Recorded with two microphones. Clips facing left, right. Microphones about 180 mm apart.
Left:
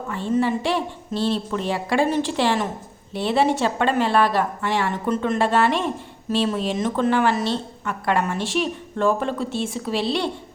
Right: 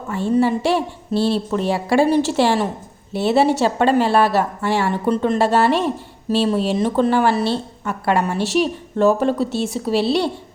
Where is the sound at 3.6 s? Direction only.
40° right (ahead or behind).